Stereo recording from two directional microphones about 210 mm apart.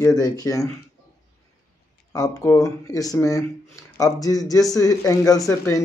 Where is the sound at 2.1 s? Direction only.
15° left (ahead or behind).